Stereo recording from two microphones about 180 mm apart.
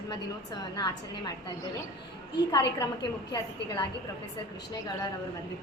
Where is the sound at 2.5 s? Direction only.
25° left (ahead or behind).